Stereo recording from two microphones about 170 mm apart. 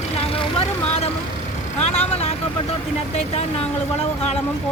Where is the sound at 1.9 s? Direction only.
35° left (ahead or behind).